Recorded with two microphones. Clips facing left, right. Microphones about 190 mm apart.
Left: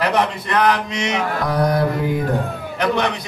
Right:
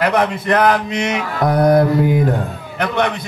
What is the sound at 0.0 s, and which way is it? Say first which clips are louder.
Speech: right 3 dB; 50° right (ahead or behind).